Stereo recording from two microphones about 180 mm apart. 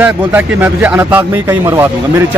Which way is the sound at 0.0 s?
10° right (ahead or behind).